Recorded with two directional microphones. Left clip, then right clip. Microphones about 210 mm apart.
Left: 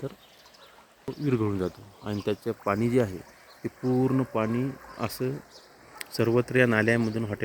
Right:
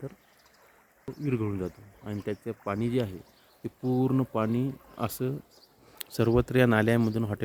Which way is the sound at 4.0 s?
20° right (ahead or behind).